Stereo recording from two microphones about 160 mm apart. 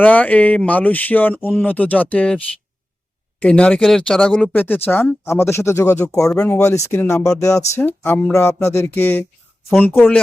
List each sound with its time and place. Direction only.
0.0 s speech: 10° left (ahead or behind)
3.4 s speech: 5° left (ahead or behind)
6.6 s speech: 20° left (ahead or behind)